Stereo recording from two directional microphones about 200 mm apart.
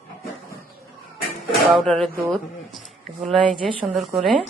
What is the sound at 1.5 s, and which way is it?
Music, centre (ahead or behind).